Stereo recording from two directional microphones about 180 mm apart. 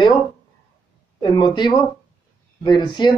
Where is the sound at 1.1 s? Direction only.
25° left (ahead or behind).